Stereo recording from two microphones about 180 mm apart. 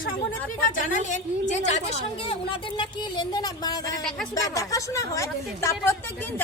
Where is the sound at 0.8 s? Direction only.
45° left (ahead or behind).